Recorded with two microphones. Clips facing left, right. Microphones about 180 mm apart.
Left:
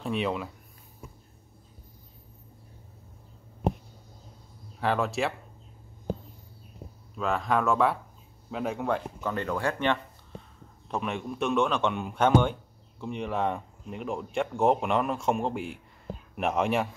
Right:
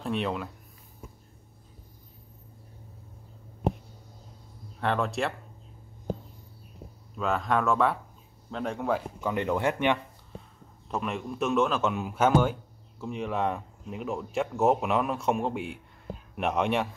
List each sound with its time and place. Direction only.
0.0 s speech: centre (ahead or behind)
4.7 s speech: centre (ahead or behind)
7.2 s speech: centre (ahead or behind)
9.3 s speech: 20° right (ahead or behind)
10.9 s speech: centre (ahead or behind)